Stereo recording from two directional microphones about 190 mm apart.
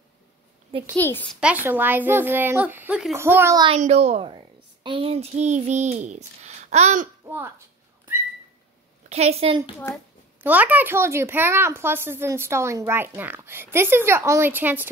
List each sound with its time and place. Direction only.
0.9 s a child's voice: 10° left (ahead or behind)
1.4 s speech: 10° right (ahead or behind)
3.7 s a child's voice: 35° right (ahead or behind)
7.2 s a sound: 10° right (ahead or behind)
9.1 s a child's voice: 35° right (ahead or behind)
10.4 s speech: 10° right (ahead or behind)